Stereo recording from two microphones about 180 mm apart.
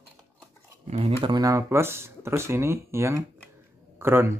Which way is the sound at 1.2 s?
20° right (ahead or behind).